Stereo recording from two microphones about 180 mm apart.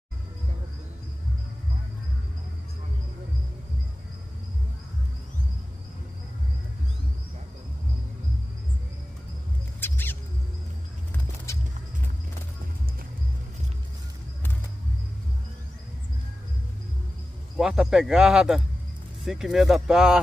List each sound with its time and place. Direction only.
9.8 s a sound: 10° left (ahead or behind)
11.5 s music: 15° left (ahead or behind)
17.6 s speech: 5° right (ahead or behind)